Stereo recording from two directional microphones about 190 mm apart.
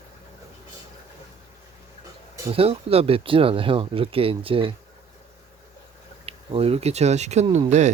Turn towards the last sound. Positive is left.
turn(degrees=-35)  # may be behind; listen again after turning